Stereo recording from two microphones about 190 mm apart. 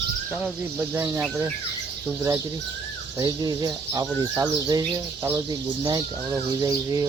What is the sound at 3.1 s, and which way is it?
Speech, 20° right (ahead or behind).